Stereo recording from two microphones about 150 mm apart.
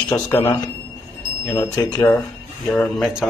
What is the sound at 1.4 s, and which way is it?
A man's voice, 10° left (ahead or behind).